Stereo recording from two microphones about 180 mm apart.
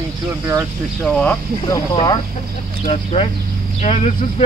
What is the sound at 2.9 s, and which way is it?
Speech, 30° left (ahead or behind).